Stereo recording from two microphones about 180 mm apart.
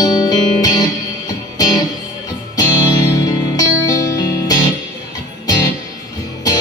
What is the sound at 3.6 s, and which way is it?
Music, 20° left (ahead or behind).